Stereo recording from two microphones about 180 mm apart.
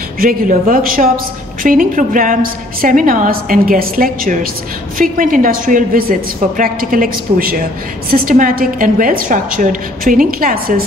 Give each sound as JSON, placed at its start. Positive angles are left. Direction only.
{"t": 0.2, "sound": "a woman's voice", "side_deg": -50}